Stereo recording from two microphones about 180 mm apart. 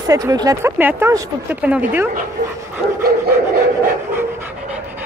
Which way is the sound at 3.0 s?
55° right (ahead or behind).